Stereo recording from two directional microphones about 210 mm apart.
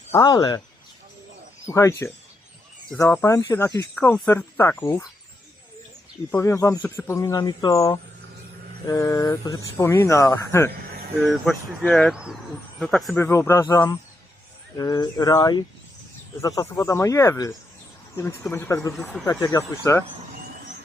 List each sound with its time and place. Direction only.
0.1 s speech: 15° left (ahead or behind)
1.6 s speech: 15° left (ahead or behind)
6.3 s speech: 15° left (ahead or behind)
11.3 s speech: centre (ahead or behind)
18.9 s speech: centre (ahead or behind)
19.2 s speech: 15° left (ahead or behind)